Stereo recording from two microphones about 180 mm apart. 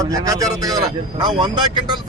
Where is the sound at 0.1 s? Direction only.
20° right (ahead or behind).